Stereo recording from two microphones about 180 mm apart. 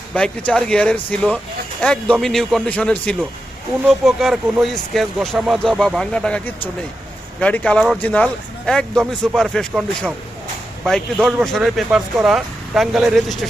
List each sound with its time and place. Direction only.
0.1 s speech: 5° left (ahead or behind)